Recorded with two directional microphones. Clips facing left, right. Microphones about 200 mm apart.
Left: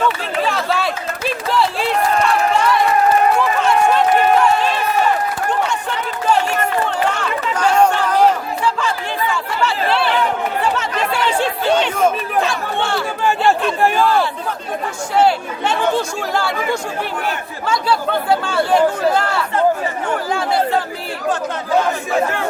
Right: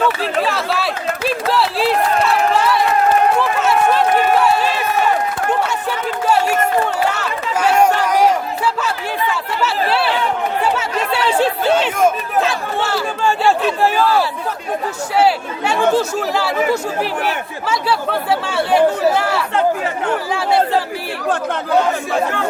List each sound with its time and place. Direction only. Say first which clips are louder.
0.2 s a sound: right 1 dB; 5° right (ahead or behind)
3.6 s run: even; 5° right (ahead or behind)
7.1 s chatter: even; 5° right (ahead or behind)
13.6 s speech: even; 5° right (ahead or behind)
17.7 s speech: left 1 dB; 5° right (ahead or behind)